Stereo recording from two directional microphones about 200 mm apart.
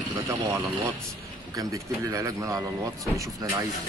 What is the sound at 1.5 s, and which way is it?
Speech, 15° right (ahead or behind).